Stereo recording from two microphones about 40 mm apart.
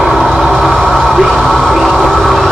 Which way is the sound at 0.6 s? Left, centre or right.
Centre.